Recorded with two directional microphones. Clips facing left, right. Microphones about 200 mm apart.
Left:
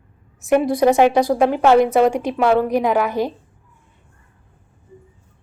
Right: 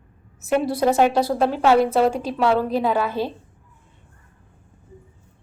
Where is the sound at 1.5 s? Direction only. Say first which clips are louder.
Left 3 dB; 15° left (ahead or behind).